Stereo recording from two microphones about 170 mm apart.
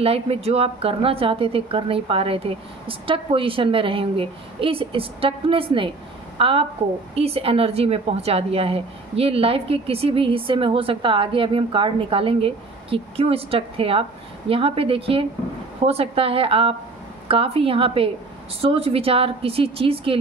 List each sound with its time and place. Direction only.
0.0 s a woman's voice: 35° right (ahead or behind)